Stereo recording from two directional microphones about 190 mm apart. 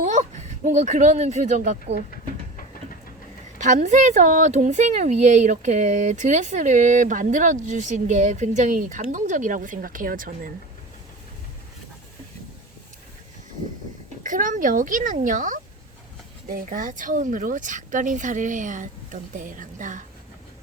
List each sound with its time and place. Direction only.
0.0 s speech: 40° right (ahead or behind)
3.6 s a woman's voice: 40° right (ahead or behind)
14.3 s speech: 45° right (ahead or behind)